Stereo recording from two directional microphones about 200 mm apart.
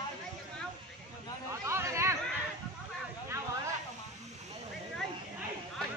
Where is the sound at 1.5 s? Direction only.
15° right (ahead or behind).